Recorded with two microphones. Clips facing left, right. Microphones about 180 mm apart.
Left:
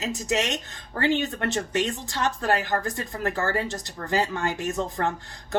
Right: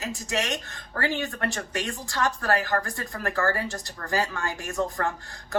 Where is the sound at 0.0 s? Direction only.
20° left (ahead or behind).